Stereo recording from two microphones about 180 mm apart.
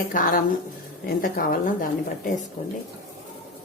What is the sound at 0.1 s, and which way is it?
A woman's voice, 50° left (ahead or behind).